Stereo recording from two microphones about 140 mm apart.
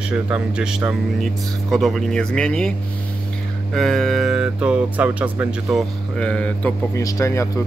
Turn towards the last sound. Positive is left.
turn(degrees=20)  # may be behind; listen again after turning